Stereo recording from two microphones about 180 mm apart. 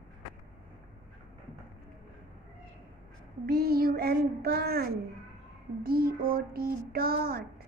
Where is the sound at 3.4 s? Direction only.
60° right (ahead or behind).